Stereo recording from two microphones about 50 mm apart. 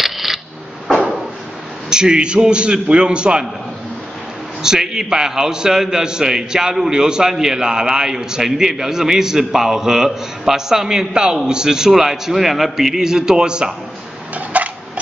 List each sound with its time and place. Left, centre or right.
0.0 s a sound: centre
1.9 s a man's voice: centre
4.6 s a man's voice: centre
14.3 s dishes: right